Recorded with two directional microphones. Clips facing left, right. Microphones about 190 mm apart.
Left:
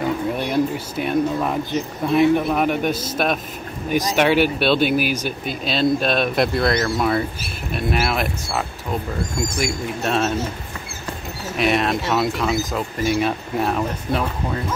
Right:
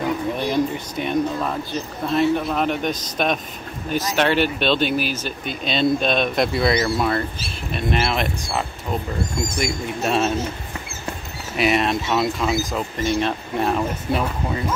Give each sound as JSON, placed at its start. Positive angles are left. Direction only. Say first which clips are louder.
{"t": 0.4, "sound": "speech", "louder": "left 1 dB", "side_deg": 5}
{"t": 11.5, "sound": "speech", "louder": "even", "side_deg": 0}